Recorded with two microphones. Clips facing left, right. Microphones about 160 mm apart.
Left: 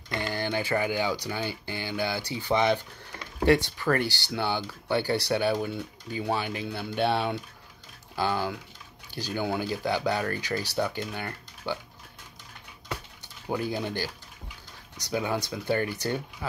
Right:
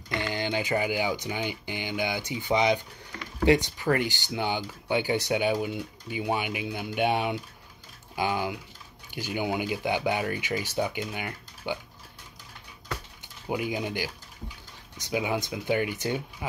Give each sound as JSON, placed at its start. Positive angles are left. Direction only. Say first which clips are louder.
{"t": 0.3, "sound": "speech", "louder": "even", "side_deg": -15}
{"t": 13.5, "sound": "speech", "louder": "even", "side_deg": -15}